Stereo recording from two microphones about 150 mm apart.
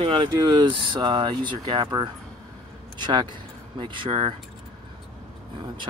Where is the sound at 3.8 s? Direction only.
35° right (ahead or behind).